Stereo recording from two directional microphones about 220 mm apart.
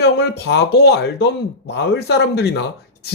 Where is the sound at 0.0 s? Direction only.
50° left (ahead or behind).